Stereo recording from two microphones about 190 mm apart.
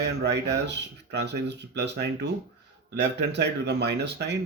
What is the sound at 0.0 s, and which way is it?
Speech, 60° right (ahead or behind).